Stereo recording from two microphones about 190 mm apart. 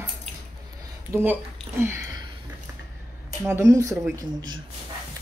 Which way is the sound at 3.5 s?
15° right (ahead or behind).